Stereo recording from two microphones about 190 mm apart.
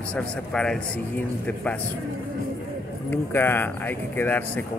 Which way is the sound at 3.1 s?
10° left (ahead or behind).